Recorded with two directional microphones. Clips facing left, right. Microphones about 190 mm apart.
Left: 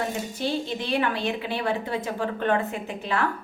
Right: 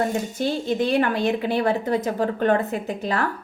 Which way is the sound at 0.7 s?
45° right (ahead or behind).